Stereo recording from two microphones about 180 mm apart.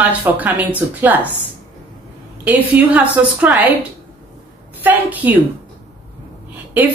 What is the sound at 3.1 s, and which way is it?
Speech, 10° right (ahead or behind).